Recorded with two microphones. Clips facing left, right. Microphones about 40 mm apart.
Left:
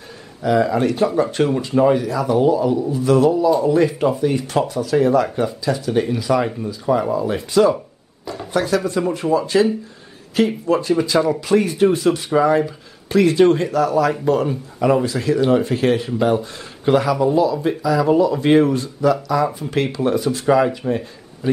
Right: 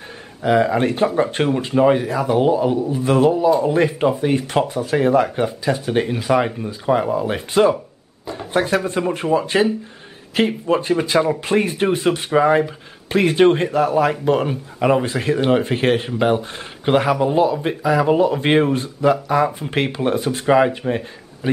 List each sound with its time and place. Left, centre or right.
0.4 s speech: right